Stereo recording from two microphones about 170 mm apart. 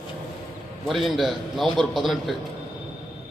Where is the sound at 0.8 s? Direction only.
Centre (ahead or behind).